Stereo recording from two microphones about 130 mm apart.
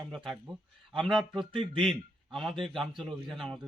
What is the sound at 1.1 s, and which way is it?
A man's voice, 5° right (ahead or behind).